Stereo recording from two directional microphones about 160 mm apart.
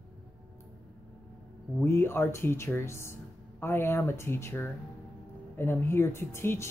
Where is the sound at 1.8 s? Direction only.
15° left (ahead or behind).